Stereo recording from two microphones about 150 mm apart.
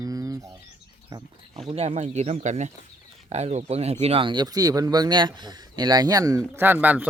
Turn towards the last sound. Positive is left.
turn(degrees=-10)  # may be behind; listen again after turning